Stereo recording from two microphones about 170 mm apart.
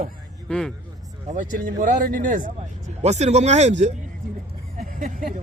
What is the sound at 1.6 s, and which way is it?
Speech, 55° right (ahead or behind).